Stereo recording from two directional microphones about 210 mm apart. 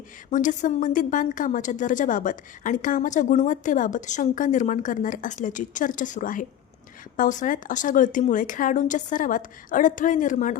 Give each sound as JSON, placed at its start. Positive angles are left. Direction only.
{"t": 0.3, "sound": "a woman's voice", "side_deg": 35}